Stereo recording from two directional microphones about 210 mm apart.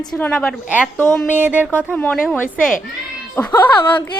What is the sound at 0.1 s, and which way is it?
A woman's voice, 10° left (ahead or behind).